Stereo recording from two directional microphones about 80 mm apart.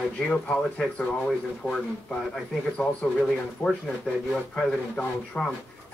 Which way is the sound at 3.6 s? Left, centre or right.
Centre.